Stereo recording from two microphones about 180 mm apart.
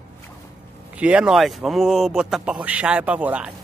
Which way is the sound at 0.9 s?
5° right (ahead or behind).